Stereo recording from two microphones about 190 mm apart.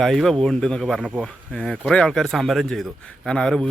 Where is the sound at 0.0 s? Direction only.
Centre (ahead or behind).